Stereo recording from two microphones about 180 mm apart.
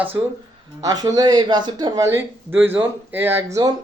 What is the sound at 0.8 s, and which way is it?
Speech, 20° right (ahead or behind).